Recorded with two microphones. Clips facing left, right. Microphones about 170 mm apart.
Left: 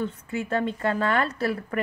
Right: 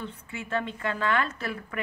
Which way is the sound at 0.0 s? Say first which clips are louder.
Left 8 dB; 40° left (ahead or behind).